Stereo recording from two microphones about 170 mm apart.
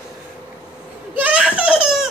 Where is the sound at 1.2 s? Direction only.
5° right (ahead or behind).